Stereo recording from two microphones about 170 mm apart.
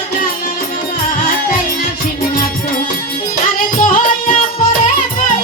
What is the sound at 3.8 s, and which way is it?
Music, 50° left (ahead or behind).